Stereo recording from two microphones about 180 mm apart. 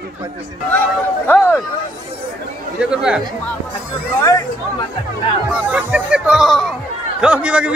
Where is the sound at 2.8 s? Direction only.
5° right (ahead or behind).